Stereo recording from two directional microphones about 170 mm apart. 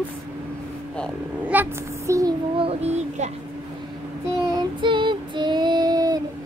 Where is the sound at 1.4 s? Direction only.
10° right (ahead or behind).